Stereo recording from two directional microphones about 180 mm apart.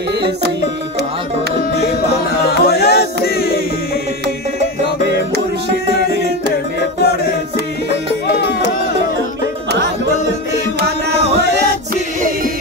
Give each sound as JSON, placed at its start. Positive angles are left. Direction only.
{"t": 2.4, "sound": "music", "side_deg": 60}